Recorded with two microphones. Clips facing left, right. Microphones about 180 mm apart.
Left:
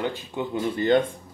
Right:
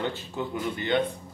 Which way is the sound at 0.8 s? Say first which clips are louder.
Left 6 dB; 40° left (ahead or behind).